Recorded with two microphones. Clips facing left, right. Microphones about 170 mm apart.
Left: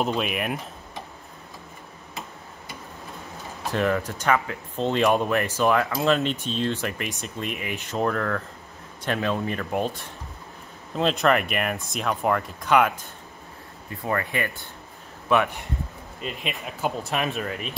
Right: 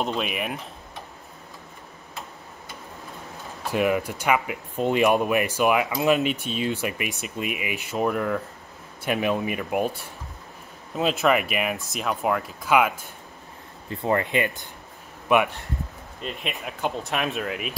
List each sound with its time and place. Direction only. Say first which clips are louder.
0.0 s speech: left 2 dB; centre (ahead or behind)
3.7 s speech: right 1 dB; 10° right (ahead or behind)
13.8 s speech: right 4 dB; 25° right (ahead or behind)
16.2 s speech: even; centre (ahead or behind)